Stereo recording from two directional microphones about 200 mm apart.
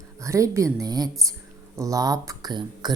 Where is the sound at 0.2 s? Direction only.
15° right (ahead or behind).